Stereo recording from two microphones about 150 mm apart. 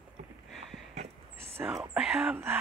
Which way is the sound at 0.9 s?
45° right (ahead or behind).